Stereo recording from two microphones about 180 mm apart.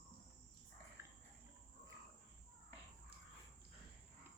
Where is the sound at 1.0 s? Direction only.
15° right (ahead or behind).